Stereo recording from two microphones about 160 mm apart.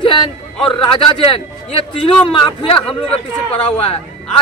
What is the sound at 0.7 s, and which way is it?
A man's voice, 35° left (ahead or behind).